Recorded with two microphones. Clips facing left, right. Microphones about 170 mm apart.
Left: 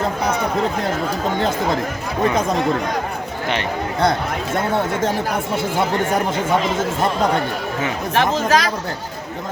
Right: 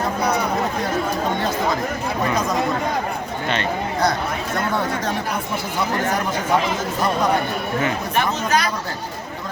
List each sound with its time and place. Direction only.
3.5 s speech: 15° left (ahead or behind)
8.1 s speech: 90° left